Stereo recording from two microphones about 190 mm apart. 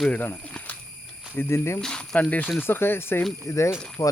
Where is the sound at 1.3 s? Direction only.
10° left (ahead or behind).